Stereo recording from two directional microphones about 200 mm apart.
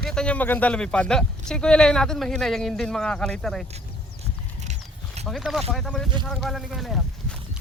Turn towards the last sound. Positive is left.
turn(degrees=0)  # may be behind; listen again after turning